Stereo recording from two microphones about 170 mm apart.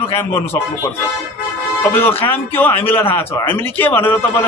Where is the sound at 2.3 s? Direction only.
10° left (ahead or behind).